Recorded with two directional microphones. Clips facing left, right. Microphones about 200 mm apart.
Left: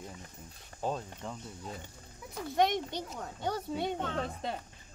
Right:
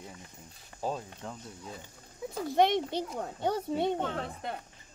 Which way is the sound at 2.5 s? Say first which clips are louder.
Right 3 dB; 25° right (ahead or behind).